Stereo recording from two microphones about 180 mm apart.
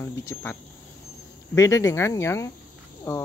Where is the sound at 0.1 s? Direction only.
15° left (ahead or behind).